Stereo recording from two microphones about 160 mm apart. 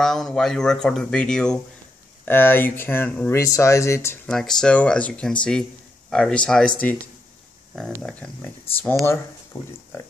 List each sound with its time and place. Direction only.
0.0 s speech: centre (ahead or behind)
4.3 s speech: 5° left (ahead or behind)
8.0 s speech: 5° left (ahead or behind)